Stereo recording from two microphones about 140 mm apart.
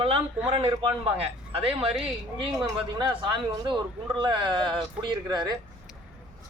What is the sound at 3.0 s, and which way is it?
A man's voice, 35° right (ahead or behind).